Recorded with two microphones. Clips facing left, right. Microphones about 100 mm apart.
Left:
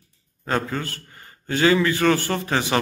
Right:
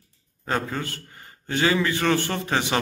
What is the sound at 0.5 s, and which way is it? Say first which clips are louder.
A man's voice: left 2 dB; 15° right (ahead or behind).